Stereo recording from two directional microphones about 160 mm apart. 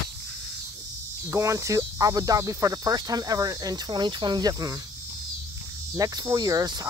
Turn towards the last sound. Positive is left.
turn(degrees=-25)  # may be behind; listen again after turning